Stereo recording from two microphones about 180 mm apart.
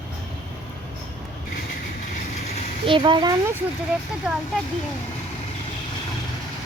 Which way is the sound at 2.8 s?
25° right (ahead or behind).